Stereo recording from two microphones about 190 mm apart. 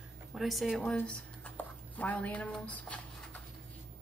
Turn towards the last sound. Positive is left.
turn(degrees=5)  # may be behind; listen again after turning